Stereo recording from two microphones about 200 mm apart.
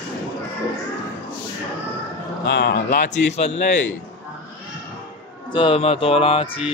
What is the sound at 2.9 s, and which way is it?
Speech, 35° left (ahead or behind).